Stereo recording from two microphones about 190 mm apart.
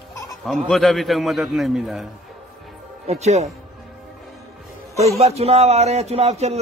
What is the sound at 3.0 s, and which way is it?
Speech, 35° right (ahead or behind).